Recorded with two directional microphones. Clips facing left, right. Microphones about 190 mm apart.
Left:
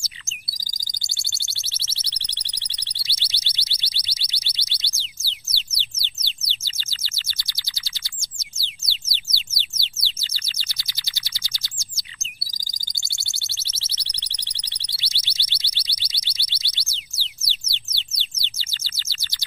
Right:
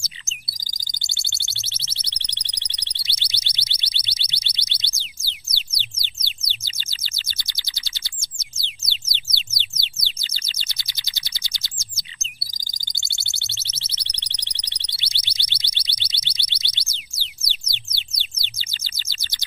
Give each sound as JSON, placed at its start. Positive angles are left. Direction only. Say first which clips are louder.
{"t": 1.5, "sound": "alarm", "louder": "right 1 dB", "side_deg": -20}
{"t": 5.8, "sound": "a sound", "louder": "right 1 dB", "side_deg": -15}
{"t": 8.5, "sound": "bird", "louder": "right 1 dB", "side_deg": -20}
{"t": 13.6, "sound": "alarm", "louder": "right 1 dB", "side_deg": -20}